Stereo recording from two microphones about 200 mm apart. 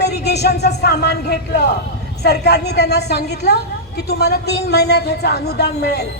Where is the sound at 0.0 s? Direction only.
55° left (ahead or behind).